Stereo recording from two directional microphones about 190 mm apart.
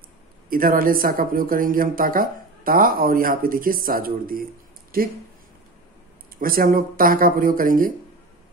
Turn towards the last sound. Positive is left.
turn(degrees=-45)  # may be behind; listen again after turning